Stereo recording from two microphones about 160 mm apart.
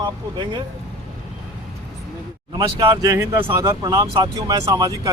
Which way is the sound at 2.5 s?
30° right (ahead or behind).